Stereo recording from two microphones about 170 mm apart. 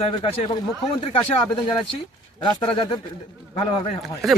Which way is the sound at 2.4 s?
30° left (ahead or behind).